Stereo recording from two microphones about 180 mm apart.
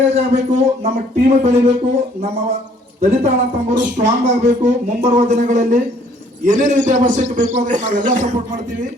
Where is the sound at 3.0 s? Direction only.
40° right (ahead or behind).